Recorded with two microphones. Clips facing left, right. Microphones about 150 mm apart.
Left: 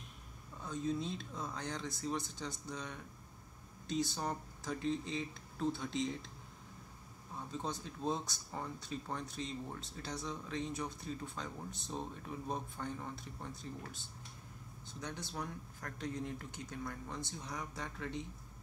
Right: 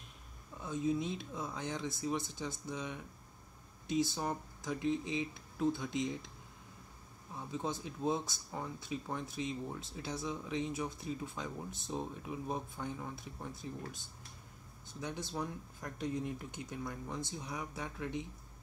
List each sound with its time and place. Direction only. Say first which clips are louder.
0.6 s speech: right 3 dB; 10° right (ahead or behind)
7.3 s speech: right 3 dB; 15° right (ahead or behind)
15.3 s speech: right 3 dB; 15° right (ahead or behind)